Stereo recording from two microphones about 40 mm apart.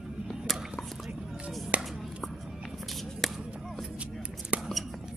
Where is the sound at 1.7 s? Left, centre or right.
Right.